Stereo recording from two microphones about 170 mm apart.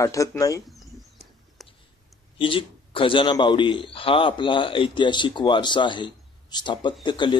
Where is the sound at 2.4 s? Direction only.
30° left (ahead or behind).